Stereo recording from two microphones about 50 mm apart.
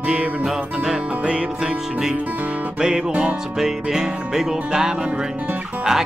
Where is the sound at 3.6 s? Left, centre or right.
Centre.